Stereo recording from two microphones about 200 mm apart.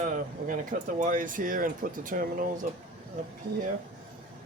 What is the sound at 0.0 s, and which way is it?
Speech, 40° right (ahead or behind).